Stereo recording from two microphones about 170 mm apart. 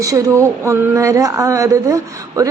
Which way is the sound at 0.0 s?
20° right (ahead or behind).